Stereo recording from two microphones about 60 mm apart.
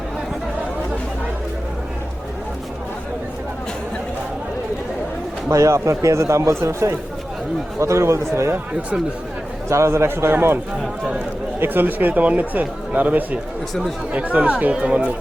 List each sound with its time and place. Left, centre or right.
5.5 s speech: right
9.6 s speech: right
11.6 s speech: right